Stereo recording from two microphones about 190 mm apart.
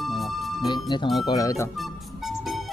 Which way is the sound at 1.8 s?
Centre (ahead or behind).